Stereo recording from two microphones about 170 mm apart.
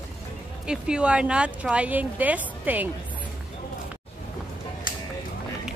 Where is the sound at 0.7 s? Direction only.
5° right (ahead or behind).